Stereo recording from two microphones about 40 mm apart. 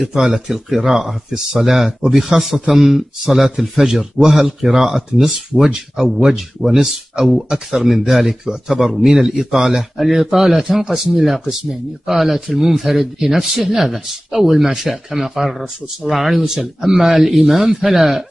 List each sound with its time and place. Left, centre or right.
0.0 s speech: centre
9.9 s speech: centre
11.0 s speech: centre